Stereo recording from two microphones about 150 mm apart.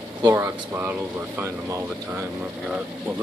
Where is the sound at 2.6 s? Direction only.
5° right (ahead or behind).